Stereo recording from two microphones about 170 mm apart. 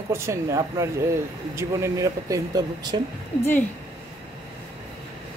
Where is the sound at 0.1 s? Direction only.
15° right (ahead or behind).